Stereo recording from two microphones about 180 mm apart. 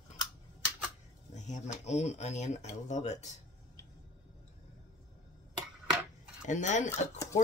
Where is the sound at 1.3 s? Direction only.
40° left (ahead or behind).